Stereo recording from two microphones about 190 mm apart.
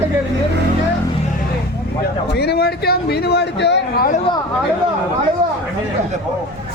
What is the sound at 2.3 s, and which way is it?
A man's voice, 60° left (ahead or behind).